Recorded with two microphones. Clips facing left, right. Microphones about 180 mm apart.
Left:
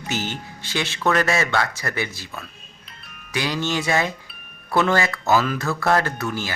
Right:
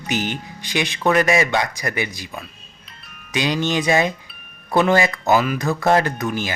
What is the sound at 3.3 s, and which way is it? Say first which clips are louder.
Speech: right 3 dB; 20° right (ahead or behind).